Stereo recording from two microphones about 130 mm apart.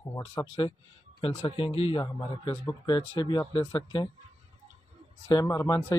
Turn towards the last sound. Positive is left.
turn(degrees=25)  # may be behind; listen again after turning